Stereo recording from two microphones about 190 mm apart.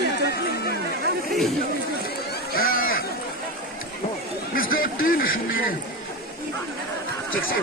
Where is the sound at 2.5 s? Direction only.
50° left (ahead or behind).